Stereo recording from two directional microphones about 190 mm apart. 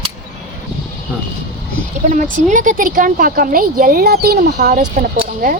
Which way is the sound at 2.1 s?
40° right (ahead or behind).